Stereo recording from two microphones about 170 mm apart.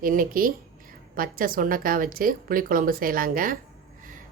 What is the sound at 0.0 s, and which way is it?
A woman's voice, 55° right (ahead or behind).